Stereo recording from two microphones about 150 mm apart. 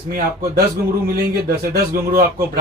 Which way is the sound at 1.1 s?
85° right.